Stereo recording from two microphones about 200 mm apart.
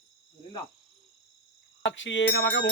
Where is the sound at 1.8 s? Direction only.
65° left (ahead or behind).